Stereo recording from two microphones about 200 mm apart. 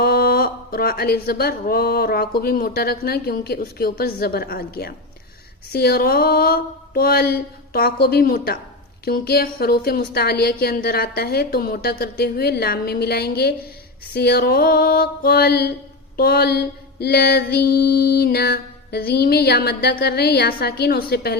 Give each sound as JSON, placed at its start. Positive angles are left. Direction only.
{"t": 0.0, "sound": "mantra", "side_deg": 50}